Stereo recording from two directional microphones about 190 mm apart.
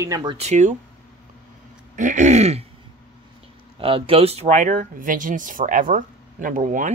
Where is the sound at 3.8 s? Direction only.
30° right (ahead or behind).